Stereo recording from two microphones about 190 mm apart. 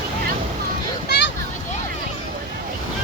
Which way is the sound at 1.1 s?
60° left (ahead or behind).